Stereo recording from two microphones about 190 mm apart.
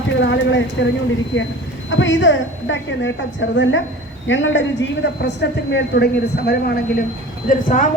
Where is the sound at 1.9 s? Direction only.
80° left.